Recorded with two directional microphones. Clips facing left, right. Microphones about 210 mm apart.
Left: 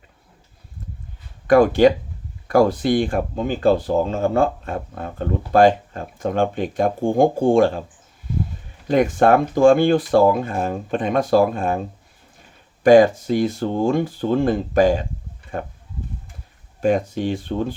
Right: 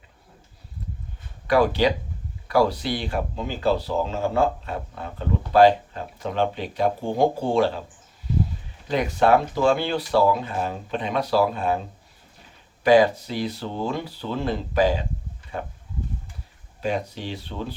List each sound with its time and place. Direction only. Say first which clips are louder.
1.5 s speech: left 7 dB; 50° left (ahead or behind)
8.9 s speech: left 4 dB; 50° left (ahead or behind)
12.8 s speech: left 5 dB; 45° left (ahead or behind)
16.8 s speech: left 8 dB; 50° left (ahead or behind)